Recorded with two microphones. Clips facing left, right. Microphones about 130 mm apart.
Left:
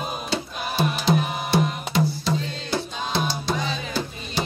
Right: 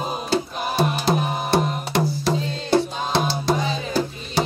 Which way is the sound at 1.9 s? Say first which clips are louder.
Right 2 dB; 70° right (ahead or behind).